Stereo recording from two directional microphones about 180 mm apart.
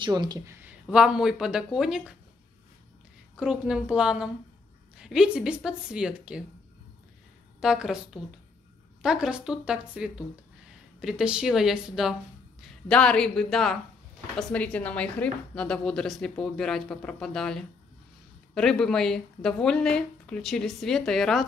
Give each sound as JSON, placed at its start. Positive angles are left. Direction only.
{"t": 0.0, "sound": "speech", "side_deg": -25}
{"t": 0.6, "sound": "a woman's voice", "side_deg": -5}
{"t": 3.3, "sound": "a woman's voice", "side_deg": -5}
{"t": 7.6, "sound": "a woman's voice", "side_deg": -5}